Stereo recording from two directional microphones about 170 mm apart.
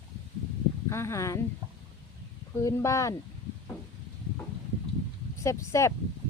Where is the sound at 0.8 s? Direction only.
15° left (ahead or behind).